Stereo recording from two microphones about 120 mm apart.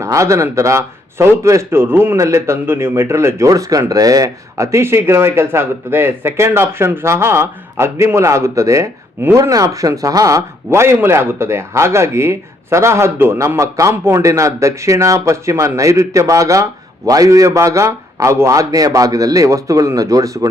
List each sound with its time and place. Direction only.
0.0 s a man's voice: 25° right (ahead or behind)